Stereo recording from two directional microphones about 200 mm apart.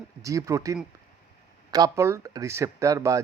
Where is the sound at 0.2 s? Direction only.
15° right (ahead or behind).